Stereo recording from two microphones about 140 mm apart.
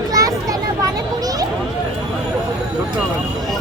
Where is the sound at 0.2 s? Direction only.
25° right (ahead or behind).